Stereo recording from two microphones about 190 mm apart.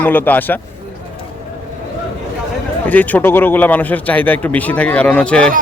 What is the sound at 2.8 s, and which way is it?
Speech, 10° left (ahead or behind).